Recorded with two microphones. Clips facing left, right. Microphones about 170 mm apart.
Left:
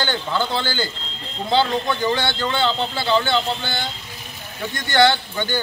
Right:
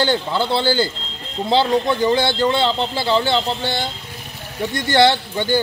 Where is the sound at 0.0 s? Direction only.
35° right (ahead or behind).